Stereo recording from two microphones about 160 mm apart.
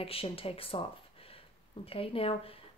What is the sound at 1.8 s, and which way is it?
Speech, 35° left (ahead or behind).